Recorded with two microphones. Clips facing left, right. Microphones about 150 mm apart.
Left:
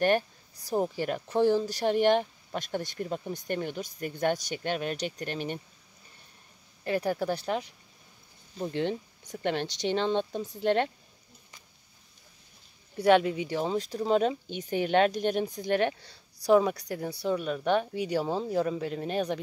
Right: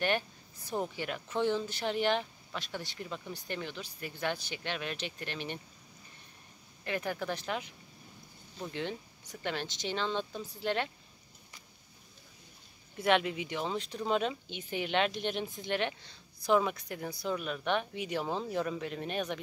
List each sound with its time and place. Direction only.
0.0 s speech: 40° left (ahead or behind)
6.8 s speech: 35° left (ahead or behind)
12.9 s speech: 35° left (ahead or behind)